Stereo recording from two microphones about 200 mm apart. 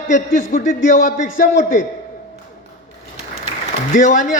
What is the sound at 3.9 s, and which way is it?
Speech, 40° left (ahead or behind).